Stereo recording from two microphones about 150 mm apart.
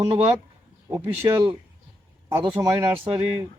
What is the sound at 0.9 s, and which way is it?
Speech, 20° right (ahead or behind).